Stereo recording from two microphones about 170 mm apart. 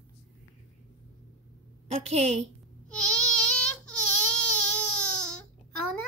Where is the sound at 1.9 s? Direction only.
40° right (ahead or behind).